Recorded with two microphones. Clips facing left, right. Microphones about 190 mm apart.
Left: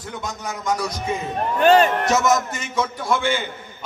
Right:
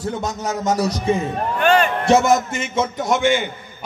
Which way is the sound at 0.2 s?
40° right (ahead or behind).